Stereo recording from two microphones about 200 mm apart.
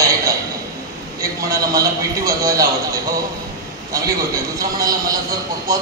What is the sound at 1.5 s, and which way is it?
A man's voice, 15° right (ahead or behind).